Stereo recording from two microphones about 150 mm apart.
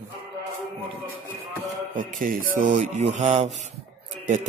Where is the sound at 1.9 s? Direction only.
65° right (ahead or behind).